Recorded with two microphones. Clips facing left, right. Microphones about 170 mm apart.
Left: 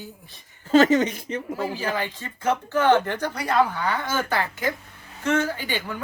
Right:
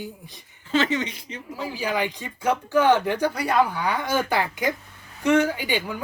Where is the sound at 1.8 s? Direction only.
15° right (ahead or behind).